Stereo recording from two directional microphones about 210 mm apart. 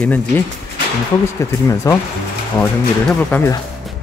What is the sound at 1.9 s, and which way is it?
Speech, 15° left (ahead or behind).